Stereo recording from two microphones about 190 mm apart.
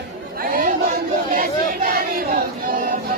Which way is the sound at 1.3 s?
50° right (ahead or behind).